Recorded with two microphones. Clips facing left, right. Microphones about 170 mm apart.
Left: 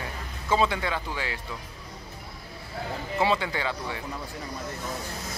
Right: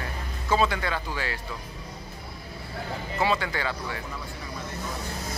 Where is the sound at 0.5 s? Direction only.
20° left (ahead or behind).